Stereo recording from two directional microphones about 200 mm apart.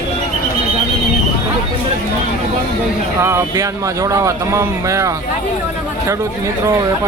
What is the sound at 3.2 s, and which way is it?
Speech, 15° right (ahead or behind).